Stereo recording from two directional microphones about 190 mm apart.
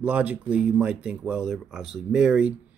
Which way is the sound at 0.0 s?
10° right (ahead or behind).